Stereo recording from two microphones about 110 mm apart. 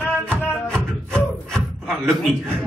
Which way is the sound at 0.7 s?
10° left (ahead or behind).